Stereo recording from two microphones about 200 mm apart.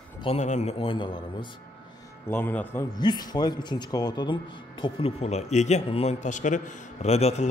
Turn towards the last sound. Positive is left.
turn(degrees=30)  # may be behind; listen again after turning